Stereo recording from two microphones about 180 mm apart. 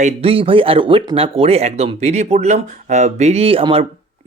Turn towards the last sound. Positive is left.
turn(degrees=-30)  # may be behind; listen again after turning